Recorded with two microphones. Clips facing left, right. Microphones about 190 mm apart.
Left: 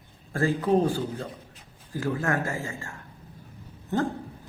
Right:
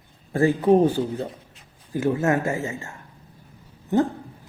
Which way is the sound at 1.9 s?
20° right (ahead or behind).